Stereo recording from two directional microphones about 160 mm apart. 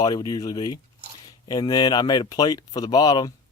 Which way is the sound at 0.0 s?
25° left (ahead or behind).